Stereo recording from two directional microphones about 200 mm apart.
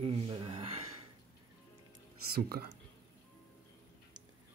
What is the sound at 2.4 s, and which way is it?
Speech, 50° right (ahead or behind).